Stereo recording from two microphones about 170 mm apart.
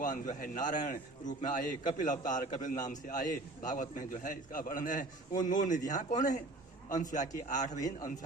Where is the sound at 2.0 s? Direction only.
50° left (ahead or behind).